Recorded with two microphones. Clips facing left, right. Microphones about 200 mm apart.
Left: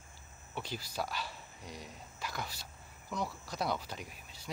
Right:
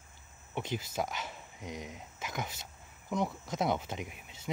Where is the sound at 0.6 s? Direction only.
20° right (ahead or behind).